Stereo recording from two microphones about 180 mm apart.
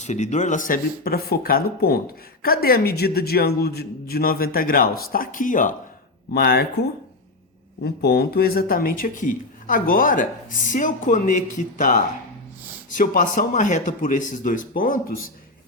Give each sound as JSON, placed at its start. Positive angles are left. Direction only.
{"t": 0.0, "sound": "a man's voice", "side_deg": 40}
{"t": 6.3, "sound": "a man's voice", "side_deg": 60}
{"t": 7.9, "sound": "speech", "side_deg": 60}